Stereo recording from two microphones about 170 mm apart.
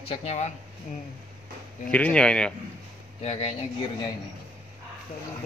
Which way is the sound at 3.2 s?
35° left (ahead or behind).